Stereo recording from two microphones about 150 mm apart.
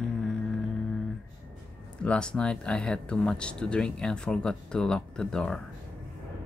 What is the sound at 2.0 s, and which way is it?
Speech, 5° left (ahead or behind).